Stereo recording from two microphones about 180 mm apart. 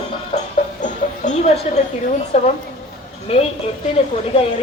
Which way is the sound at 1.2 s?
40° left (ahead or behind).